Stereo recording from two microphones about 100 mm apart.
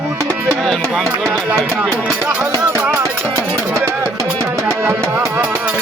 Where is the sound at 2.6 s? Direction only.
25° right (ahead or behind).